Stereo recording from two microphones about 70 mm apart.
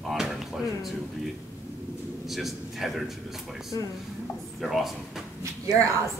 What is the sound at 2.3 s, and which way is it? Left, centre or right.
Speech, centre.